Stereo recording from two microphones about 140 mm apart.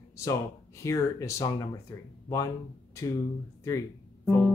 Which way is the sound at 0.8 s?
20° left (ahead or behind).